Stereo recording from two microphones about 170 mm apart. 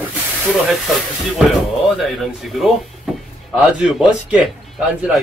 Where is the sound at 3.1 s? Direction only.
5° right (ahead or behind).